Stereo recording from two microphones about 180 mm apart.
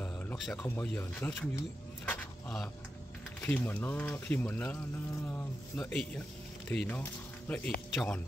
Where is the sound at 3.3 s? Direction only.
10° left (ahead or behind).